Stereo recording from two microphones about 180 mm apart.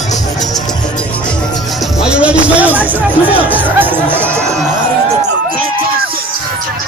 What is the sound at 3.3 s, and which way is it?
Music, 10° right (ahead or behind).